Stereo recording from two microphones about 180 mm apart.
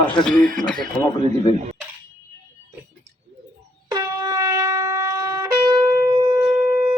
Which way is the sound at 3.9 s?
20° right (ahead or behind).